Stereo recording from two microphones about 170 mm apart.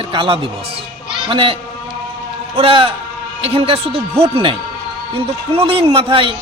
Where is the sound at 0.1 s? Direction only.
30° right (ahead or behind).